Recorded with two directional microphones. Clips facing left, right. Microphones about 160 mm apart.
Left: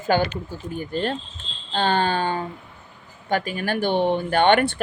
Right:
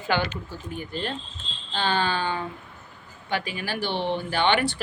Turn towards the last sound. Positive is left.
turn(degrees=55)  # may be behind; listen again after turning